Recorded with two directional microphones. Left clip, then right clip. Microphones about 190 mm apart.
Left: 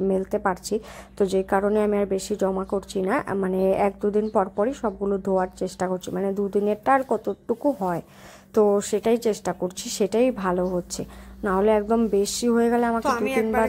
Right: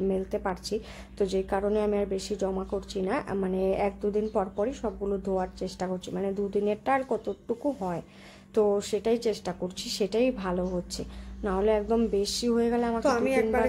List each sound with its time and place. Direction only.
0.1 s a woman's voice: 20° left (ahead or behind)
13.0 s a woman's voice: centre (ahead or behind)